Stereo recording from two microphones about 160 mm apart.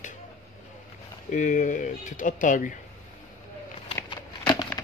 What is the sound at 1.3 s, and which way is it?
Speech, 55° left (ahead or behind).